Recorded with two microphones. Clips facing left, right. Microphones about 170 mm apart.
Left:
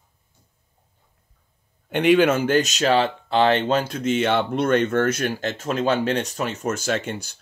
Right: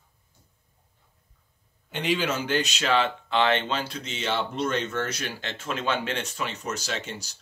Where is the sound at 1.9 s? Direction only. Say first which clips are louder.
Left 10 dB; 60° left (ahead or behind).